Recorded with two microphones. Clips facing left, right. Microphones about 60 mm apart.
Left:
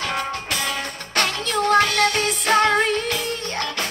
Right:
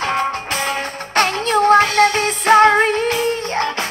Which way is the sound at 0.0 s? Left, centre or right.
Right.